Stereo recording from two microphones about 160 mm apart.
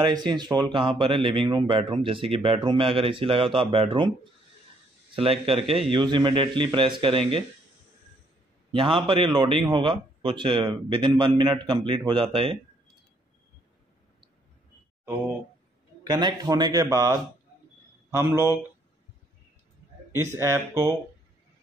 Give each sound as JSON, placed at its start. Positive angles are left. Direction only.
{"t": 0.0, "sound": "speech", "side_deg": -30}
{"t": 8.7, "sound": "speech", "side_deg": -35}
{"t": 16.0, "sound": "a man's voice", "side_deg": -25}
{"t": 20.1, "sound": "speech", "side_deg": -15}